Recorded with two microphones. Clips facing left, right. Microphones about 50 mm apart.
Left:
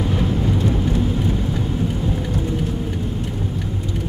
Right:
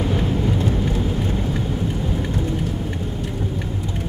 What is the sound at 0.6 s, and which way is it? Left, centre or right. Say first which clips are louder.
Vehicle: left 2 dB; right.